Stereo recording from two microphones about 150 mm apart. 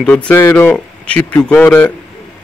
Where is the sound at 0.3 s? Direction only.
15° left (ahead or behind).